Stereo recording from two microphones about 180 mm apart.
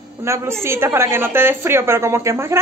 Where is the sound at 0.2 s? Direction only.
15° right (ahead or behind).